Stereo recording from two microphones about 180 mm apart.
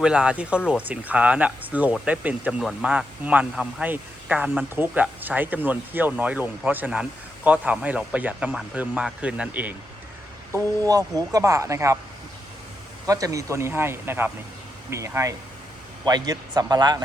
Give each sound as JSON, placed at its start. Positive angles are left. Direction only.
{"t": 0.0, "sound": "speech", "side_deg": -5}
{"t": 10.5, "sound": "speech", "side_deg": -20}
{"t": 13.1, "sound": "speech", "side_deg": -20}